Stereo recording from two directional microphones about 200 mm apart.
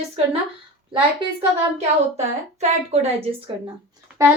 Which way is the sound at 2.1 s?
35° right (ahead or behind).